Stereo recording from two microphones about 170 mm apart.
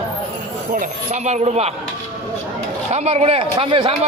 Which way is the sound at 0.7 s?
50° right (ahead or behind).